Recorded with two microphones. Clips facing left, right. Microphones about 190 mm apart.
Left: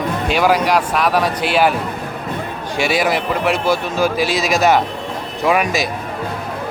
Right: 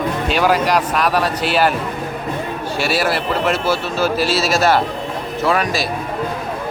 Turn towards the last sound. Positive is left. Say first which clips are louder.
# left 1 dB
turn(degrees=10)  # may be behind; listen again after turning